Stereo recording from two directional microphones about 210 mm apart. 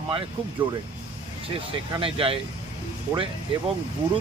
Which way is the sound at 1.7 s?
25° right (ahead or behind).